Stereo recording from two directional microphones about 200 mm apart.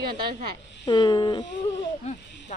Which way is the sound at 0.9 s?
20° left (ahead or behind).